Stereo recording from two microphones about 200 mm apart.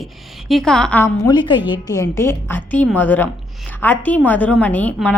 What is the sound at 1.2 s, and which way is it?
A woman's voice, 25° left (ahead or behind).